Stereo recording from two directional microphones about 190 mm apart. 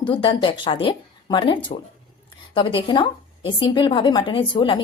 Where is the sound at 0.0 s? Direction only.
25° left (ahead or behind).